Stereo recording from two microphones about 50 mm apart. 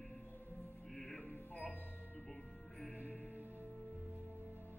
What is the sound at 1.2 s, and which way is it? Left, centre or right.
Music, left.